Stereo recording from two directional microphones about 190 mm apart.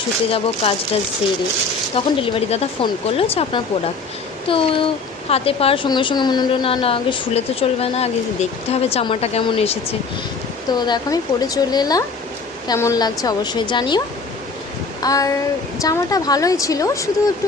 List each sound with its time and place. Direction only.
0.3 s a woman's voice: 30° left (ahead or behind)
2.0 s a woman's voice: 30° left (ahead or behind)
15.0 s a woman's voice: 20° left (ahead or behind)